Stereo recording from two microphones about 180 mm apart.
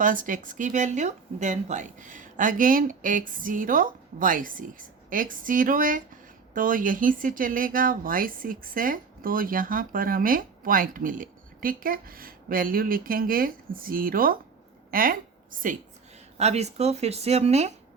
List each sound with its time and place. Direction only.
0.0 s speech: 45° right (ahead or behind)
14.8 s a sound: 50° right (ahead or behind)
16.4 s speech: 35° right (ahead or behind)